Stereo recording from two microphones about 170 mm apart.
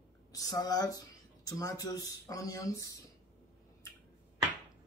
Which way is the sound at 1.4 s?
20° left (ahead or behind).